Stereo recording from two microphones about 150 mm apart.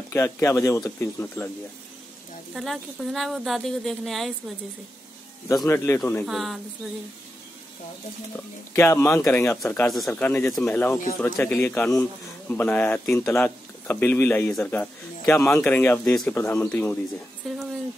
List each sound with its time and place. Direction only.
0.1 s a man's voice: 15° left (ahead or behind)
2.5 s a woman's voice: centre (ahead or behind)
5.7 s a man's voice: 15° left (ahead or behind)
6.2 s a woman's voice: centre (ahead or behind)
8.7 s a man's voice: 15° left (ahead or behind)
9.8 s a man's voice: centre (ahead or behind)
17.4 s a woman's voice: centre (ahead or behind)